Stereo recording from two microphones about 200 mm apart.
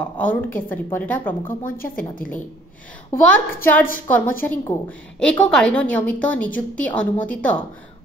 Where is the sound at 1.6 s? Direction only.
45° left (ahead or behind).